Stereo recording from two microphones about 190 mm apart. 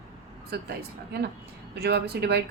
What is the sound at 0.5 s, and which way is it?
Speech, 55° right (ahead or behind).